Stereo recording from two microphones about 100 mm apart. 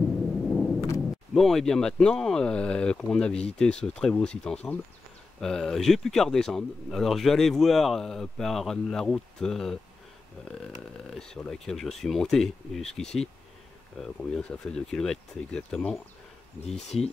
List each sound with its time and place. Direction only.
0.5 s thunder: 5° left (ahead or behind)
1.3 s speech: 5° left (ahead or behind)
16.6 s speech: 90° left